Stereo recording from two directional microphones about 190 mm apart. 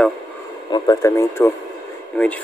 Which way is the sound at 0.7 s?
20° left (ahead or behind).